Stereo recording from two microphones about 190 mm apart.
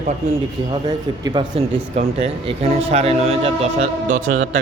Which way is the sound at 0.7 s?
20° right (ahead or behind).